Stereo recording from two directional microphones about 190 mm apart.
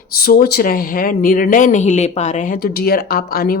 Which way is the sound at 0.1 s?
50° left (ahead or behind).